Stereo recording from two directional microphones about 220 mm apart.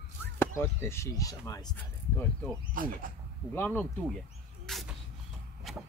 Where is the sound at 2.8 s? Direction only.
40° right (ahead or behind).